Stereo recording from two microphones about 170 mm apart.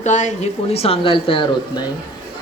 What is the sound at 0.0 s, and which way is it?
Speech, 45° left (ahead or behind).